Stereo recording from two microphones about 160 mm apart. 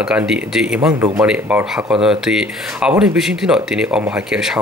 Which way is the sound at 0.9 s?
15° right (ahead or behind).